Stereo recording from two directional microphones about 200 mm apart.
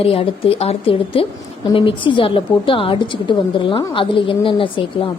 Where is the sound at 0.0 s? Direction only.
25° left (ahead or behind).